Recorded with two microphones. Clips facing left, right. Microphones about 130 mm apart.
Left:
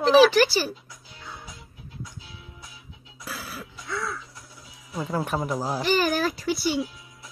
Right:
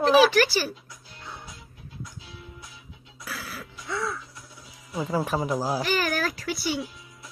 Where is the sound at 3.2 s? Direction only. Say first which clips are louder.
Left 1 dB; centre (ahead or behind).